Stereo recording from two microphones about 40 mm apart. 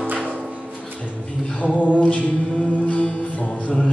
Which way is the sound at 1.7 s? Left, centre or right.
Left.